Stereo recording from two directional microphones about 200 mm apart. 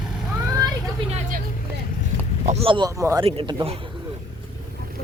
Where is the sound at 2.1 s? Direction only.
65° right (ahead or behind).